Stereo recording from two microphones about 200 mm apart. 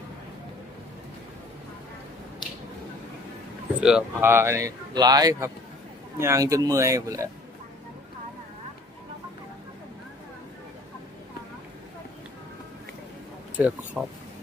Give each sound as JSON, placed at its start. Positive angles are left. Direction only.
{"t": 3.8, "sound": "speech", "side_deg": -5}
{"t": 13.6, "sound": "speech", "side_deg": -5}